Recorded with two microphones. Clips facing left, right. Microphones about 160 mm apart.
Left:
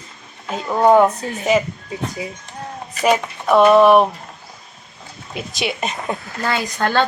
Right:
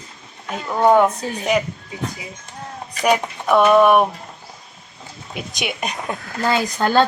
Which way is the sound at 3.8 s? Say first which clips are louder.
Left 2 dB; 5° right (ahead or behind).